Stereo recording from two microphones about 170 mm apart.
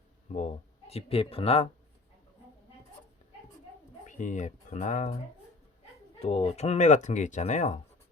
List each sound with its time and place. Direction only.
0.9 s speech: 35° left (ahead or behind)
4.0 s speech: 45° left (ahead or behind)
6.1 s speech: 35° left (ahead or behind)